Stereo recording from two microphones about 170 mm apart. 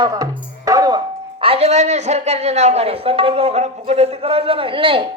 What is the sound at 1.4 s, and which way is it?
A man's voice, 35° right (ahead or behind).